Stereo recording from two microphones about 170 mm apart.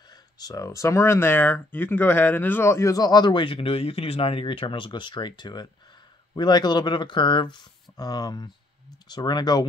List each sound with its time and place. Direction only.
0.4 s speech: 20° left (ahead or behind)